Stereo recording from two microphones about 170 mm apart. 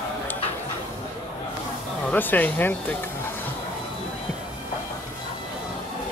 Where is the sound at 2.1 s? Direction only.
10° left (ahead or behind).